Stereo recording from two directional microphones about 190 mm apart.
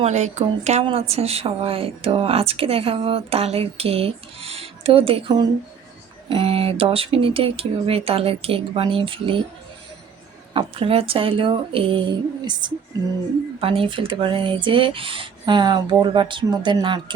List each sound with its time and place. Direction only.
0.0 s speech: 35° right (ahead or behind)
10.5 s speech: 30° right (ahead or behind)